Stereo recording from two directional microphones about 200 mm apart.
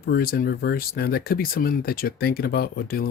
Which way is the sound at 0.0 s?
50° left (ahead or behind).